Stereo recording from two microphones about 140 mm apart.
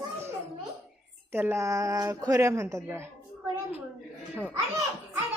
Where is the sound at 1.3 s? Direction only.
15° right (ahead or behind).